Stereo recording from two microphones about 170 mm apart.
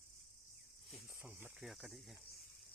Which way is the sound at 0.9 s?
Centre (ahead or behind).